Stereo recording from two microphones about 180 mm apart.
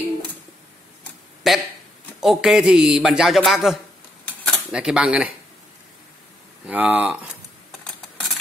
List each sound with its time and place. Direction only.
1.5 s a man's voice: centre (ahead or behind)
4.3 s typewriter: centre (ahead or behind)
6.6 s speech: 10° right (ahead or behind)